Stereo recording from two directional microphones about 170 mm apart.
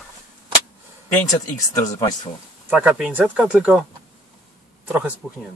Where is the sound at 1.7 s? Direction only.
20° left (ahead or behind).